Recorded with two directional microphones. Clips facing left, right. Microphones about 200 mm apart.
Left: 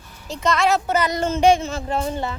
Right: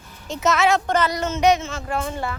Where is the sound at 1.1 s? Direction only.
30° left (ahead or behind).